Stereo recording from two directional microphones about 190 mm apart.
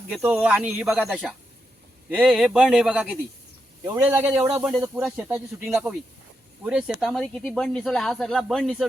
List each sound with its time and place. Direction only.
0.1 s speech: 10° right (ahead or behind)